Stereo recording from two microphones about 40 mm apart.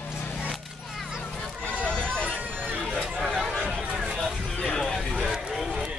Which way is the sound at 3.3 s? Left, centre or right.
Centre.